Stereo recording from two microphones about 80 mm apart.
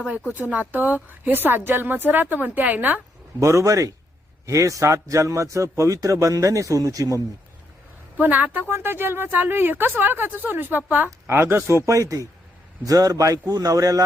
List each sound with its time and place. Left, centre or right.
0.1 s speech: centre
3.4 s a man's voice: right
8.2 s a man's voice: right